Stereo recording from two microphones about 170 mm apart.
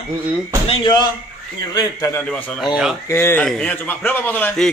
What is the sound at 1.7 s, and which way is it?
Speech, 15° left (ahead or behind).